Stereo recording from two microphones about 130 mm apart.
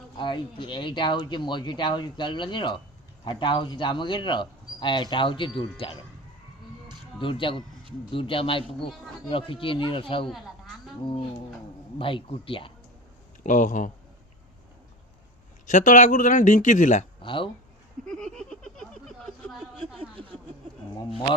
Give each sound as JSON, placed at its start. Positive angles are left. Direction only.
{"t": 0.2, "sound": "speech", "side_deg": 40}
{"t": 7.2, "sound": "speech", "side_deg": 40}
{"t": 13.4, "sound": "speech", "side_deg": 75}
{"t": 15.6, "sound": "speech", "side_deg": 80}
{"t": 17.2, "sound": "speech", "side_deg": 40}
{"t": 18.3, "sound": "a sound", "side_deg": 5}